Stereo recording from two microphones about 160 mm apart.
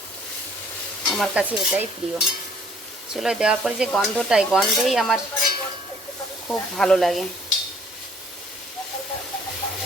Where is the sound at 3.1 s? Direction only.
5° right (ahead or behind).